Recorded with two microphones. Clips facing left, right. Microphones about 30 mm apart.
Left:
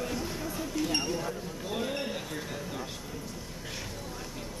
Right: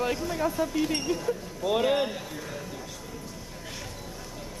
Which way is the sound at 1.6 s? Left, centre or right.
Right.